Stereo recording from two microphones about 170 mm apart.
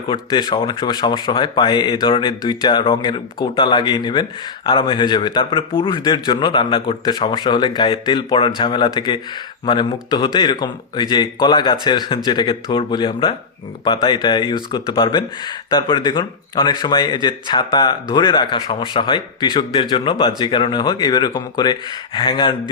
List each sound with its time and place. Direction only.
0.1 s speech: 25° left (ahead or behind)